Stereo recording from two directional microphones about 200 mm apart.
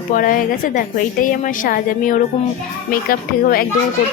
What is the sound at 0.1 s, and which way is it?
A woman's voice, 45° left (ahead or behind).